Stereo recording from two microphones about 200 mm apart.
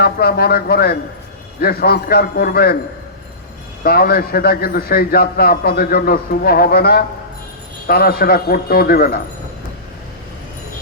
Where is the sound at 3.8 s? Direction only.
50° left (ahead or behind).